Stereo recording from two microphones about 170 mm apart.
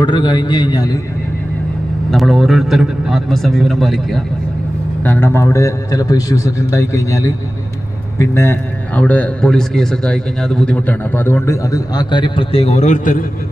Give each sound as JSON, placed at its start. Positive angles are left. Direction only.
{"t": 0.0, "sound": "a man's voice", "side_deg": 25}
{"t": 2.0, "sound": "a man's voice", "side_deg": 0}
{"t": 5.0, "sound": "a man's voice", "side_deg": 10}